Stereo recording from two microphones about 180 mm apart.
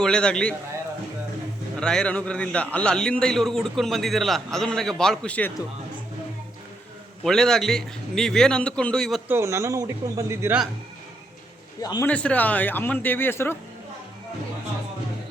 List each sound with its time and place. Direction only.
0.0 s a man's voice: 5° left (ahead or behind)
1.8 s a man's voice: 5° left (ahead or behind)
7.3 s a man's voice: 5° left (ahead or behind)
9.3 s speech: 15° right (ahead or behind)
11.8 s a man's voice: 20° left (ahead or behind)
12.0 s speech: 5° left (ahead or behind)